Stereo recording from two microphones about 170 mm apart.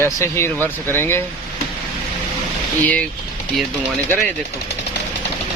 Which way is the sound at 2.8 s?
10° left (ahead or behind).